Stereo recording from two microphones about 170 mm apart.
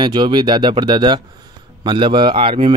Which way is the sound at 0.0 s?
25° right (ahead or behind).